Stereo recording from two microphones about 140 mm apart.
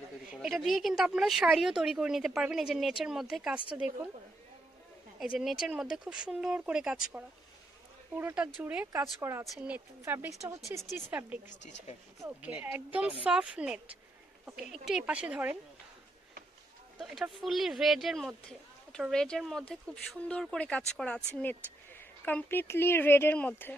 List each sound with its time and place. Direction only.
0.3 s speech: centre (ahead or behind)
5.2 s speech: 5° right (ahead or behind); by 9.5 s 20° right (ahead or behind)
9.5 s speech: 10° right (ahead or behind)
17.0 s speech: centre (ahead or behind)